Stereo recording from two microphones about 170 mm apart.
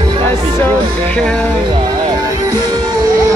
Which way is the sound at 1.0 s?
5° left (ahead or behind).